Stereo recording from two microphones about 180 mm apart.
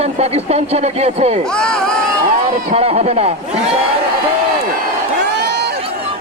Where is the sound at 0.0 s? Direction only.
35° right (ahead or behind).